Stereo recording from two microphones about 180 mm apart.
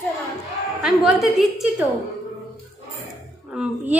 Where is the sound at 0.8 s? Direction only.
Centre (ahead or behind).